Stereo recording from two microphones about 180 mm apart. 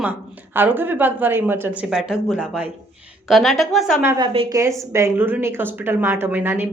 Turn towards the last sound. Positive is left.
turn(degrees=-10)  # may be behind; listen again after turning